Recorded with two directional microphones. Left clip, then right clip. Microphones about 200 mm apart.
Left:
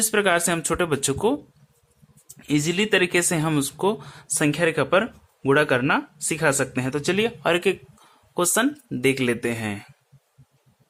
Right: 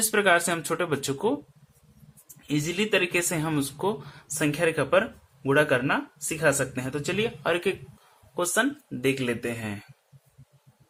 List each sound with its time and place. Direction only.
0.0 s speech: 20° left (ahead or behind)
2.5 s speech: 30° left (ahead or behind)